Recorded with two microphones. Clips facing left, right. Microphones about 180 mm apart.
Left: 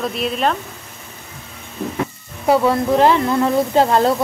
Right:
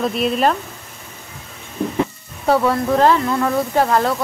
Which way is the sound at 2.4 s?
15° left (ahead or behind).